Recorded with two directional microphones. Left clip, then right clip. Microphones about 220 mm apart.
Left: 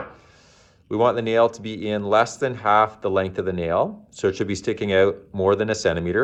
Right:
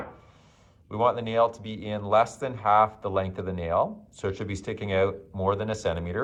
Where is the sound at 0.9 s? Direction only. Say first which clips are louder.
Left 5 dB; 35° left (ahead or behind).